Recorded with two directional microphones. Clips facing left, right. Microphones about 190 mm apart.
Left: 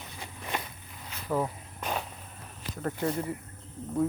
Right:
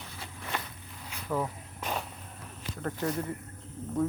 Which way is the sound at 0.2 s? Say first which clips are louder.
Left 2 dB; 15° left (ahead or behind).